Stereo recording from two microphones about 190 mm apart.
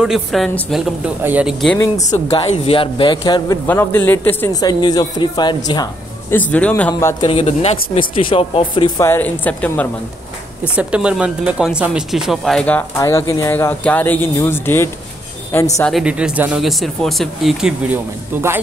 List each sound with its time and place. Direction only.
0.0 s speech: centre (ahead or behind)
2.3 s speech: 30° left (ahead or behind)
3.6 s speech: 10° left (ahead or behind)
6.3 s speech: 10° left (ahead or behind)
6.9 s speech: 20° left (ahead or behind)
7.2 s speech: 30° left (ahead or behind); by 9.8 s 10° left (ahead or behind)
10.8 s speech: 5° right (ahead or behind); by 14.9 s 10° left (ahead or behind)
15.8 s speech: centre (ahead or behind)